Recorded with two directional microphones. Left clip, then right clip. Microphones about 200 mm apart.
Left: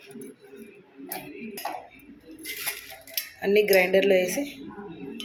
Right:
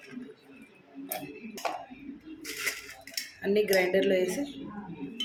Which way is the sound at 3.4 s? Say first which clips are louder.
Left 5 dB; 15° left (ahead or behind).